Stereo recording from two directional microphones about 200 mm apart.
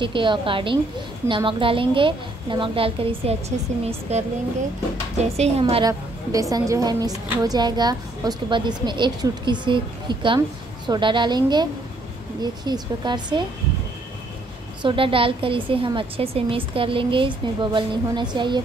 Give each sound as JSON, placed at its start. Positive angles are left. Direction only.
{"t": 0.0, "sound": "a woman's voice", "side_deg": -25}
{"t": 5.4, "sound": "a woman's voice", "side_deg": -30}
{"t": 14.8, "sound": "a woman's voice", "side_deg": -25}